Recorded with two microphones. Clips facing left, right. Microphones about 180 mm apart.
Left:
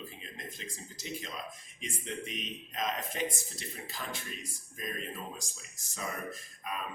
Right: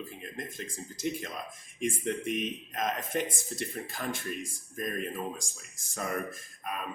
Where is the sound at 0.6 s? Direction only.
50° right (ahead or behind).